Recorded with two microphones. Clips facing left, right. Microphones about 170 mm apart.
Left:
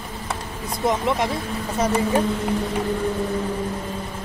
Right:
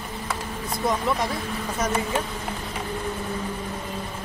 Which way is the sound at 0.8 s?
20° left (ahead or behind).